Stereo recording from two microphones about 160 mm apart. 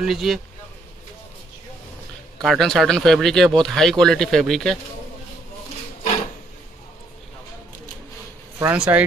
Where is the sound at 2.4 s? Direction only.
Centre (ahead or behind).